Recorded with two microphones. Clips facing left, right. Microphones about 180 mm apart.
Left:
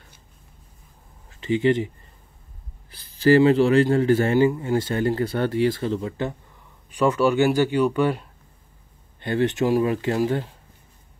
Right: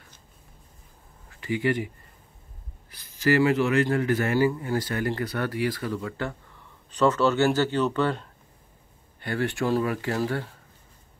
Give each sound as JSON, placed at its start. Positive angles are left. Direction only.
{"t": 1.3, "sound": "speech", "side_deg": 25}
{"t": 2.9, "sound": "a man's voice", "side_deg": 30}